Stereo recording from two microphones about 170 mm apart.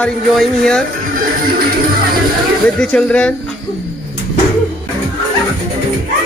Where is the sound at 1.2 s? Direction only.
60° right (ahead or behind).